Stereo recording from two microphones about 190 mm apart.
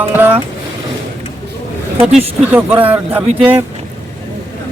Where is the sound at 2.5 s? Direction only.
10° right (ahead or behind).